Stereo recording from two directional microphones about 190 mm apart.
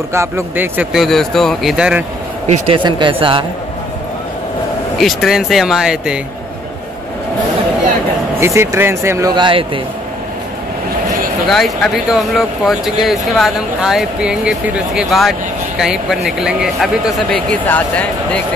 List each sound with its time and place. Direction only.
0.1 s speech: 15° right (ahead or behind)
2.4 s a man's voice: 35° right (ahead or behind)
2.8 s speech: 25° right (ahead or behind)
4.9 s speech: centre (ahead or behind)
8.4 s speech: 15° right (ahead or behind)
11.4 s speech: centre (ahead or behind)